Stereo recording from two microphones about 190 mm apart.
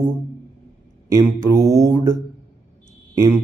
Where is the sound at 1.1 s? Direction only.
15° right (ahead or behind).